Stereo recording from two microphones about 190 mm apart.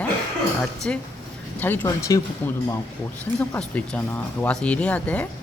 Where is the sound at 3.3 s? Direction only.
10° left (ahead or behind).